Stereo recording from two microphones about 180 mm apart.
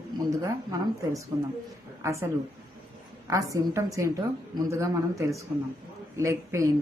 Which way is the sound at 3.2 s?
20° right (ahead or behind).